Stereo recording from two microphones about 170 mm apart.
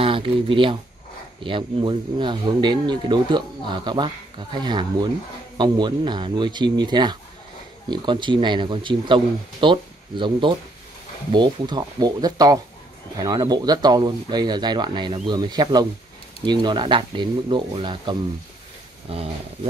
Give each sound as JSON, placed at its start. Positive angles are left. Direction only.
{"t": 0.0, "sound": "speech", "side_deg": -30}